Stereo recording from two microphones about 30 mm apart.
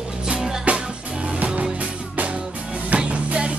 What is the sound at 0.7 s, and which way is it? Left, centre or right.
Music, right.